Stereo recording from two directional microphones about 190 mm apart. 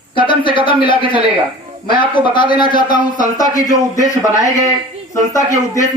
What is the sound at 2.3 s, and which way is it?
Speech, 25° left (ahead or behind).